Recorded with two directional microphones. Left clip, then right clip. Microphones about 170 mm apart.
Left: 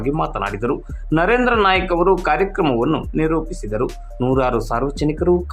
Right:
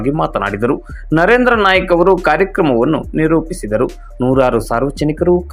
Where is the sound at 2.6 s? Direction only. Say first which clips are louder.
Right 5 dB; 10° right (ahead or behind).